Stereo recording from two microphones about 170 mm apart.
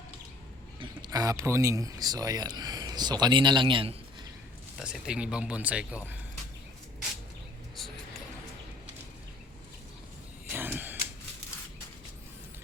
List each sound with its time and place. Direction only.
0.8 s speech: 25° right (ahead or behind)
4.8 s speech: 5° right (ahead or behind)
10.5 s a sound: 10° right (ahead or behind)